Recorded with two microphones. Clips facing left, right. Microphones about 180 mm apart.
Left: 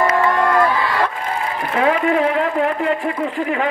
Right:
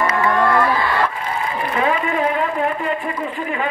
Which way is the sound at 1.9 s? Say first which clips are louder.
Left 5 dB; 90° left.